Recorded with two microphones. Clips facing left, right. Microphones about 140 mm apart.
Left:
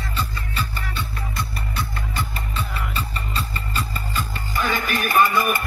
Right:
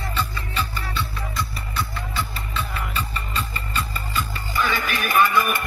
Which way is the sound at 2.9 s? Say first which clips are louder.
Right 1 dB; 35° left (ahead or behind).